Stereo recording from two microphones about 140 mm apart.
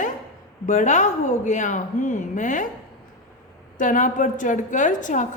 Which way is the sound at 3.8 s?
65° left (ahead or behind).